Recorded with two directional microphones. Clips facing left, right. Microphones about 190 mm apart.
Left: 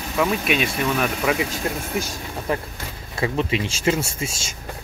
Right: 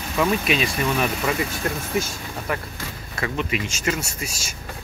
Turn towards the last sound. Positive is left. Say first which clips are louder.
# left 4 dB
turn(degrees=25)  # may be behind; listen again after turning